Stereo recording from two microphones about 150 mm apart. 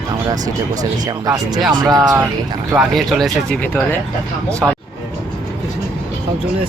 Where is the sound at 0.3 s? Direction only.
25° right (ahead or behind).